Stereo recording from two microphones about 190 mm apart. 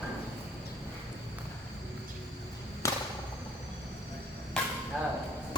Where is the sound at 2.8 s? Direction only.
15° left (ahead or behind).